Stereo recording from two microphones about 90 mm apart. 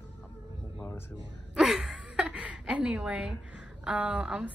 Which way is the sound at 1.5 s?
5° right (ahead or behind).